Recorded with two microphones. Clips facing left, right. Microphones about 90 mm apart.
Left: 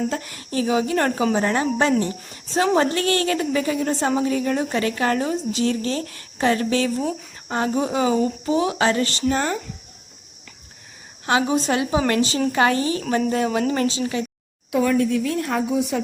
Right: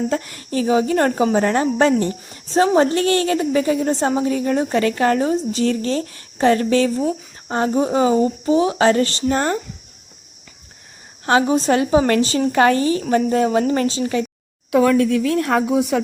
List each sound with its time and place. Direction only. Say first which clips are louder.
0.1 s a woman's voice: right 5 dB; 40° right (ahead or behind)
7.0 s speech: right 4 dB; 10° right (ahead or behind)
7.5 s a woman's voice: right 4 dB; 30° right (ahead or behind)
11.3 s a woman's voice: right 4 dB; 35° right (ahead or behind)
14.7 s a woman's voice: right 4 dB; 80° right; by 16.0 s 65° right (ahead or behind)